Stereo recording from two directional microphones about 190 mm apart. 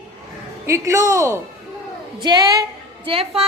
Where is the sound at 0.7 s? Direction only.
15° right (ahead or behind).